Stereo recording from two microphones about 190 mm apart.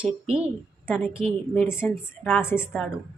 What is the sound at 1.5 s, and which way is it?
A woman's voice, 10° left (ahead or behind).